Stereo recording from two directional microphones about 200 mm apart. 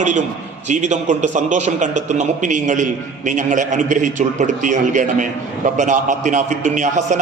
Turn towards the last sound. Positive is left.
turn(degrees=-40)  # may be behind; listen again after turning